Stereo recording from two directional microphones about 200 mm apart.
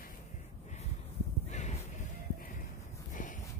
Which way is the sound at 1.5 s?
35° left (ahead or behind).